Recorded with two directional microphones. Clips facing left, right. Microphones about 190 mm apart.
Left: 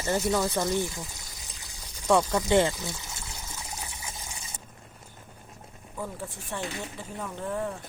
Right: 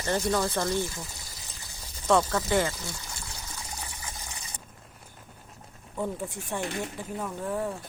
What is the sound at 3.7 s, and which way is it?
Water, 25° left (ahead or behind).